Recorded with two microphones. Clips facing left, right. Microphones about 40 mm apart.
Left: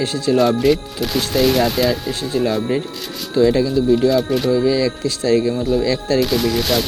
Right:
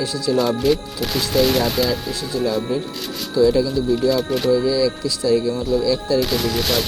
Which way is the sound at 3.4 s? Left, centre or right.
Left.